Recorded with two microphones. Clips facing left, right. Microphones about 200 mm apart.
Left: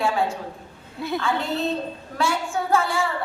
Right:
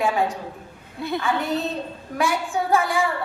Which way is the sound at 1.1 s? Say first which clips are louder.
Right 1 dB; 15° right (ahead or behind).